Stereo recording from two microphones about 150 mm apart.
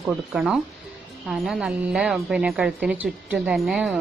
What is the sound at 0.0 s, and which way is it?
A woman's voice, 5° right (ahead or behind).